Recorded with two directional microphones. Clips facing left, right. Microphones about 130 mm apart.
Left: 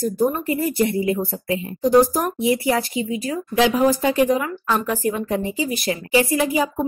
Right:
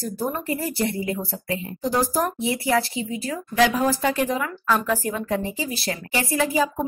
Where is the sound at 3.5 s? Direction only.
25° left (ahead or behind).